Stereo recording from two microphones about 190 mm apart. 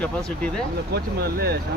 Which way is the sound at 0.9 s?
55° right (ahead or behind).